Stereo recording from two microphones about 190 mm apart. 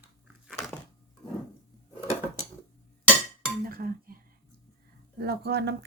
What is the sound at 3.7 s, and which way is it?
Chink, 50° right (ahead or behind).